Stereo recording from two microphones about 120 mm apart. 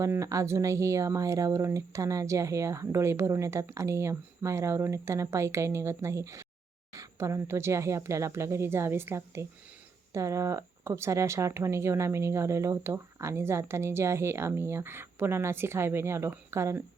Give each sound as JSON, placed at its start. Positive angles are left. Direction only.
{"t": 0.0, "sound": "speech", "side_deg": -25}